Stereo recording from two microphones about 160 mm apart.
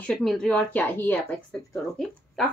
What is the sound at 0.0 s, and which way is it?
Speech, 5° left (ahead or behind).